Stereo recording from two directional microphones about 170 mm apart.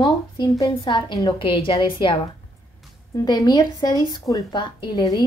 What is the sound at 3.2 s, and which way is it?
A woman's voice, 25° left (ahead or behind).